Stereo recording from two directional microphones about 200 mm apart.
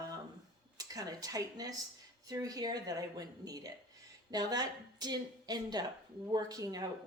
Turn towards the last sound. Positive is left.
turn(degrees=-20)  # may be behind; listen again after turning